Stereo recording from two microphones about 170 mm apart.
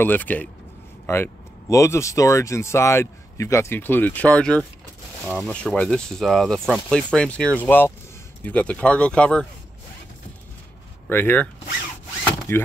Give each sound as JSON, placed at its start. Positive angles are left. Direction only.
{"t": 0.0, "sound": "speech", "side_deg": 10}
{"t": 5.2, "sound": "speech", "side_deg": -5}
{"t": 5.5, "sound": "speech", "side_deg": 5}
{"t": 11.1, "sound": "speech", "side_deg": 10}
{"t": 12.5, "sound": "speech", "side_deg": 15}